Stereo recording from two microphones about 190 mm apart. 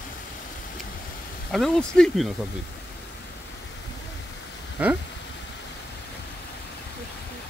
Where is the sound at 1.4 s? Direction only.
Centre (ahead or behind).